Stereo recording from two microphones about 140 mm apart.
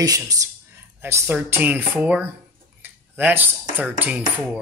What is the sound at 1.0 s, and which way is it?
Speech, 15° right (ahead or behind).